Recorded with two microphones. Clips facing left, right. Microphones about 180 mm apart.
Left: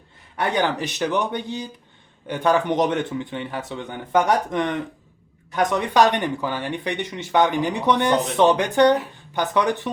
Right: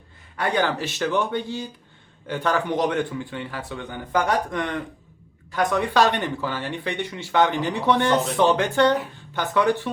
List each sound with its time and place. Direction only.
0.3 s speech: 20° left (ahead or behind)